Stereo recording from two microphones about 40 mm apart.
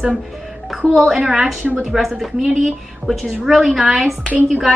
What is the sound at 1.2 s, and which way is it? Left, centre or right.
A woman's voice, centre.